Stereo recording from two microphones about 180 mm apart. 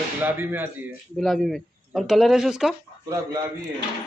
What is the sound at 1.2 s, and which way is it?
Speech, centre (ahead or behind).